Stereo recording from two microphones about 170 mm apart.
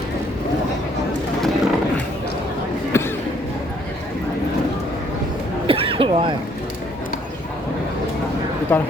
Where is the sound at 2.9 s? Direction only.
15° left (ahead or behind).